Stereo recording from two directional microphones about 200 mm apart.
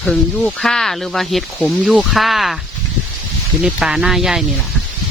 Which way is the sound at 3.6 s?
5° right (ahead or behind).